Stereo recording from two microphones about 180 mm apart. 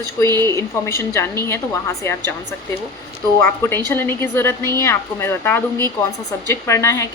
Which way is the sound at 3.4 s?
10° left (ahead or behind).